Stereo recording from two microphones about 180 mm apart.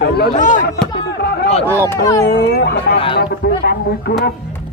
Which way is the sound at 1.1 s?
65° left (ahead or behind).